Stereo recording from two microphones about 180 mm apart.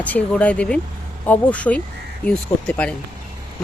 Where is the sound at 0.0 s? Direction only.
10° left (ahead or behind).